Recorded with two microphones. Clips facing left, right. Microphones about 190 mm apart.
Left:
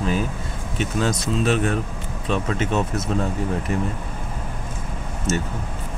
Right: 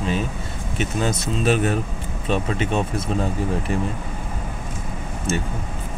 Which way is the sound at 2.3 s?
30° right (ahead or behind).